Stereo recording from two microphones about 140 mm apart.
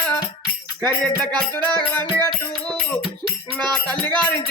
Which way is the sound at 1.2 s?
10° left (ahead or behind).